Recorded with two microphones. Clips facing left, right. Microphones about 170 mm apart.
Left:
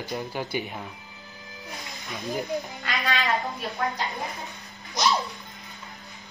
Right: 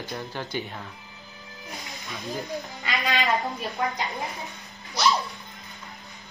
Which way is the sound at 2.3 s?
20° left (ahead or behind).